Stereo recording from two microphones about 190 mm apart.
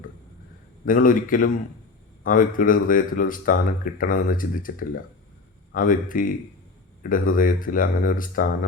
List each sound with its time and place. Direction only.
0.9 s speech: 45° left (ahead or behind)